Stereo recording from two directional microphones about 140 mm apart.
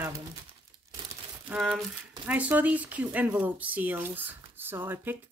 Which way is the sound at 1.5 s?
Centre (ahead or behind).